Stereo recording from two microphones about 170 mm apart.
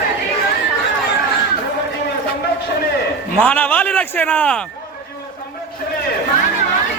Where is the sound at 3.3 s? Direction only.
10° left (ahead or behind).